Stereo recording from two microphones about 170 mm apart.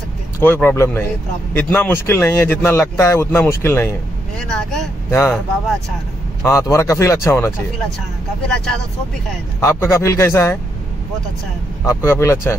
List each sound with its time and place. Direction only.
0.4 s speech: 10° left (ahead or behind)
4.4 s speech: 5° left (ahead or behind)
5.1 s speech: 15° left (ahead or behind)
6.4 s speech: 15° left (ahead or behind)
9.6 s speech: 15° left (ahead or behind)
11.8 s speech: 15° left (ahead or behind)